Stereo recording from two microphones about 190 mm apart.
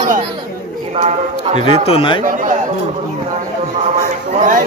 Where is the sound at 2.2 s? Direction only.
45° right (ahead or behind).